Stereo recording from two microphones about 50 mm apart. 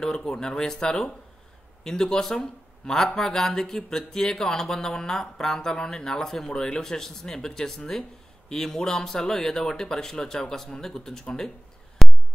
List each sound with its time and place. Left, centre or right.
0.0 s speech: centre
6.5 s speech: centre
12.0 s a sound: centre